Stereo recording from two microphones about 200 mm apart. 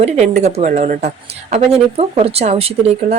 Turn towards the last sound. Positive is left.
turn(degrees=-30)  # may be behind; listen again after turning